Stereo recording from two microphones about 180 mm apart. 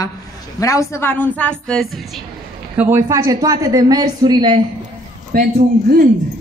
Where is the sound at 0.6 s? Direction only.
20° left (ahead or behind); by 2.0 s centre (ahead or behind).